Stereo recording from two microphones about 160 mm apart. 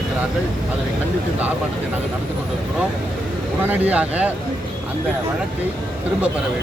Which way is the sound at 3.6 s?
10° right (ahead or behind).